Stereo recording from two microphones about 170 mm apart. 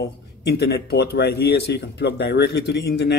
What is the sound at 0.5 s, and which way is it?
Speech, 70° left (ahead or behind).